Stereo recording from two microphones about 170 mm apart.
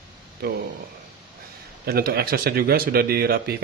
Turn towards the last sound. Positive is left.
turn(degrees=-65)  # may be behind; listen again after turning